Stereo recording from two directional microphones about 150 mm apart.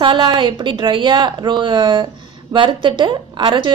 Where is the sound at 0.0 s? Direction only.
35° right (ahead or behind).